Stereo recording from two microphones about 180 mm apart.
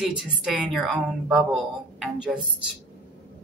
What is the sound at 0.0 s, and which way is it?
A woman's voice, 5° right (ahead or behind).